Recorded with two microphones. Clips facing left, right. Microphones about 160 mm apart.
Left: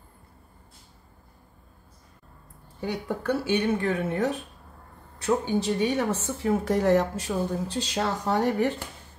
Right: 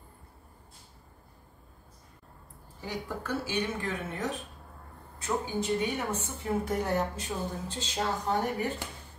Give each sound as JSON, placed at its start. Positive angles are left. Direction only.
{"t": 2.8, "sound": "a woman's voice", "side_deg": 65}
{"t": 5.2, "sound": "a woman's voice", "side_deg": 80}